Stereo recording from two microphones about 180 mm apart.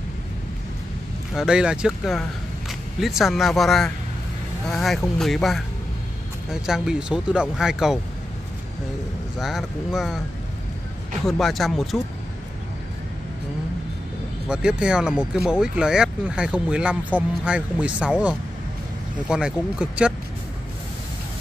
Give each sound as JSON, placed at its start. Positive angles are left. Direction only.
{"t": 1.3, "sound": "speech", "side_deg": -5}
{"t": 9.4, "sound": "speech", "side_deg": 0}
{"t": 11.2, "sound": "speech", "side_deg": 0}
{"t": 14.5, "sound": "speech", "side_deg": -5}